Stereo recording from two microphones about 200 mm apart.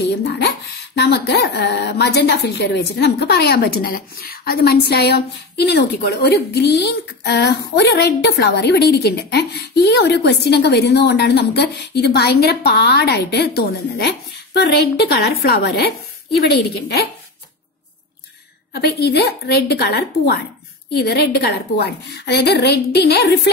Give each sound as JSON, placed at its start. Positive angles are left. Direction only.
{"t": 0.9, "sound": "a woman's voice", "side_deg": 55}
{"t": 18.7, "sound": "a woman's voice", "side_deg": 55}